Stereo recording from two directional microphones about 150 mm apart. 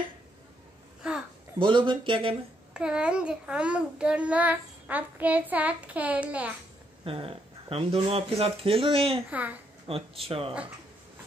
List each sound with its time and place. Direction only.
1.0 s babbling: 5° right (ahead or behind)
1.6 s speech: 30° right (ahead or behind)
2.7 s a child's voice: 5° right (ahead or behind)
7.1 s speech: 40° right (ahead or behind)
9.3 s a child's voice: 10° right (ahead or behind)
9.8 s speech: 40° right (ahead or behind)